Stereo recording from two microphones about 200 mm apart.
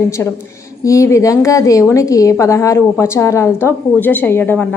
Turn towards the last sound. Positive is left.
turn(degrees=10)  # may be behind; listen again after turning